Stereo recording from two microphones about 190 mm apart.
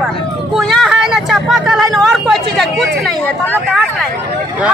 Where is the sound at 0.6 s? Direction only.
Centre (ahead or behind).